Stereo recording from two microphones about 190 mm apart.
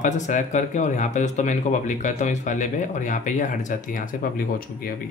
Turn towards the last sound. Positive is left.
turn(degrees=50)  # may be behind; listen again after turning